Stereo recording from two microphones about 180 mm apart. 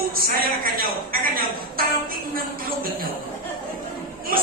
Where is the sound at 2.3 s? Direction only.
55° right (ahead or behind).